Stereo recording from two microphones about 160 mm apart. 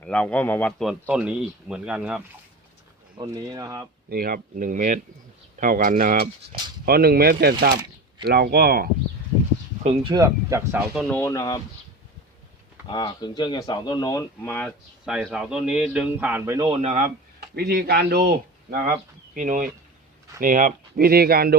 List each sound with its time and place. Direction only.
0.0 s a man's voice: 5° left (ahead or behind)
0.9 s a man's voice: 5° right (ahead or behind)
3.2 s speech: 20° right (ahead or behind)
4.1 s speech: 65° right (ahead or behind)
9.8 s speech: 40° right (ahead or behind)
10.1 s speech: 20° right (ahead or behind)
11.1 s a man's voice: 15° left (ahead or behind)
11.3 s speech: 25° left (ahead or behind)
12.9 s speech: 25° left (ahead or behind)
14.4 s a man's voice: 10° left (ahead or behind)
15.0 s a man's voice: 5° right (ahead or behind)
16.6 s a man's voice: 35° right (ahead or behind)
17.5 s speech: 75° right (ahead or behind)